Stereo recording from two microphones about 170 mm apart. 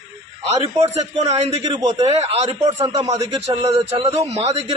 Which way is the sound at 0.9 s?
40° right (ahead or behind).